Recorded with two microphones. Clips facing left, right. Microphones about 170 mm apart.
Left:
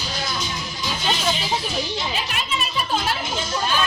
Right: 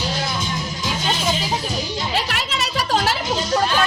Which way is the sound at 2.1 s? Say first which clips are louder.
Right 3 dB; 80° right.